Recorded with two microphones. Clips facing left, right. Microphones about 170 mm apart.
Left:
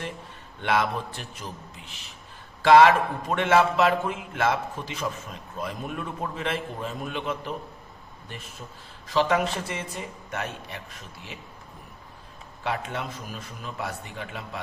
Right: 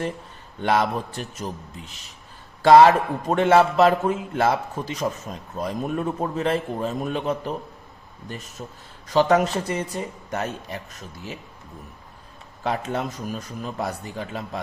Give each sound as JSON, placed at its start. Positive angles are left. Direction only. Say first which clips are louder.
{"t": 0.6, "sound": "a man's voice", "louder": "right 3 dB", "side_deg": -35}
{"t": 12.6, "sound": "a man's voice", "louder": "right 5 dB", "side_deg": -40}